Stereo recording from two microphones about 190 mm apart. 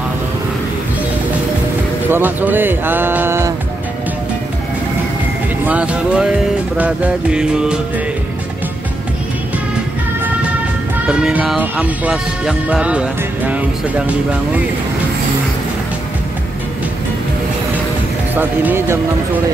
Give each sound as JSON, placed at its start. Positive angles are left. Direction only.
{"t": 2.0, "sound": "speech", "side_deg": -10}
{"t": 5.7, "sound": "speech", "side_deg": -5}
{"t": 11.1, "sound": "speech", "side_deg": -5}
{"t": 18.3, "sound": "speech", "side_deg": -10}